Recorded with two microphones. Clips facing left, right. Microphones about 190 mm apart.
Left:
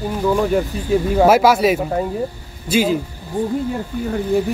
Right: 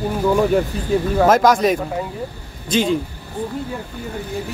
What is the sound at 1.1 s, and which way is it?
Speech, 10° left (ahead or behind).